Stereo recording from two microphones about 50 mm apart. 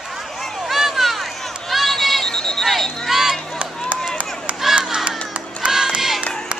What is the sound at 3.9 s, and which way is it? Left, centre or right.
Run, right.